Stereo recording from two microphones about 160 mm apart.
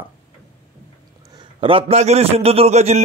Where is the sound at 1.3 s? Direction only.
30° right (ahead or behind).